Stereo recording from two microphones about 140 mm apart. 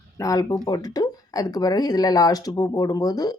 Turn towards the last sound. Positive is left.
turn(degrees=25)  # may be behind; listen again after turning